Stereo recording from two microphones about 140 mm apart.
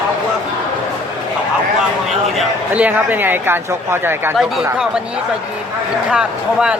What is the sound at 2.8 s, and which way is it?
Speech, 15° right (ahead or behind).